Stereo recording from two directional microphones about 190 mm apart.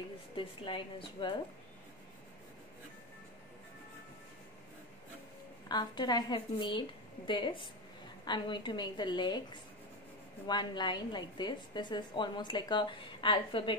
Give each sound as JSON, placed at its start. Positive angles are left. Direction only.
{"t": 0.4, "sound": "a woman's voice", "side_deg": 25}
{"t": 5.7, "sound": "a woman's voice", "side_deg": 20}